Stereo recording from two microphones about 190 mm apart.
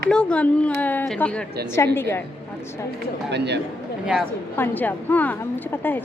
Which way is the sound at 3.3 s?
65° right (ahead or behind).